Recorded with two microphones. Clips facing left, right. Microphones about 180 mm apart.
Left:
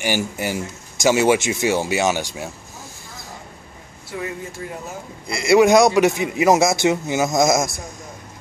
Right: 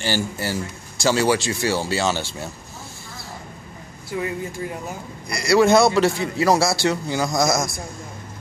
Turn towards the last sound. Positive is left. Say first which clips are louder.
# left 3 dB
turn(degrees=20)  # may be behind; listen again after turning